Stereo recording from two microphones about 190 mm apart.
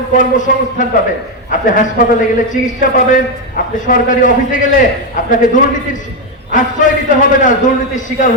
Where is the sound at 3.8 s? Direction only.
45° left (ahead or behind).